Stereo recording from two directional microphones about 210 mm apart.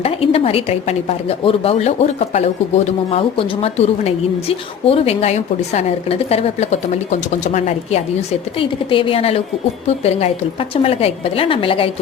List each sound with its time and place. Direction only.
0.0 s a woman's voice: 25° left (ahead or behind)